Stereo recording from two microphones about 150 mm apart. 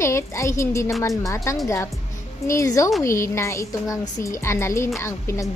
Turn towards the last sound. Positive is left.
turn(degrees=20)  # may be behind; listen again after turning